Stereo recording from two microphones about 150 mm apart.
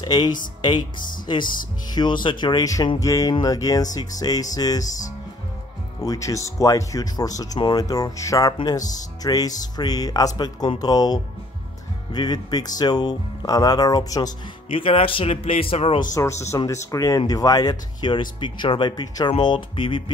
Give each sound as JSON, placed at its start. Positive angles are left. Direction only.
{"t": 0.0, "sound": "speech", "side_deg": 30}
{"t": 2.2, "sound": "speech", "side_deg": 30}
{"t": 5.9, "sound": "speech", "side_deg": 20}
{"t": 14.7, "sound": "speech", "side_deg": 35}
{"t": 16.1, "sound": "speech", "side_deg": 20}